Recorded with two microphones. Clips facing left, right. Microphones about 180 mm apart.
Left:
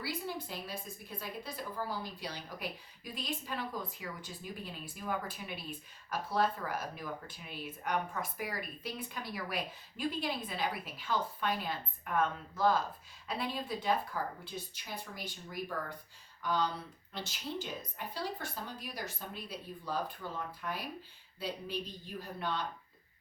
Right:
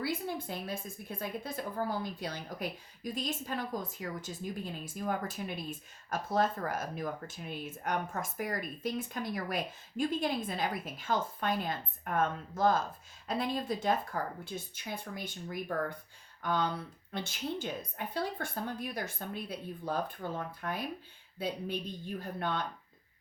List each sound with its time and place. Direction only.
0.0 s a woman's voice: 50° right (ahead or behind)